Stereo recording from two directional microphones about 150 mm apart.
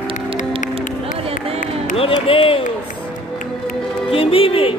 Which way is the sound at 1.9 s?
40° left (ahead or behind).